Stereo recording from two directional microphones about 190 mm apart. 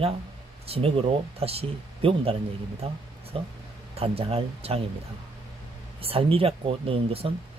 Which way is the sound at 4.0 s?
30° right (ahead or behind).